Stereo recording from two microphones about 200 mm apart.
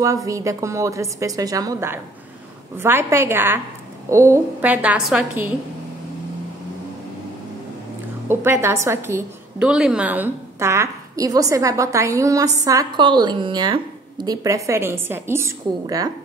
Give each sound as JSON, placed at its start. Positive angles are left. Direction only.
{"t": 0.0, "sound": "a woman's voice", "side_deg": -15}
{"t": 8.3, "sound": "a woman's voice", "side_deg": -10}